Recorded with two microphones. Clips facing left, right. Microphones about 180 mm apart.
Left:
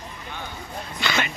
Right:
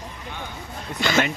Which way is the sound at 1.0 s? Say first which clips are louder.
Right 5 dB; 45° right (ahead or behind).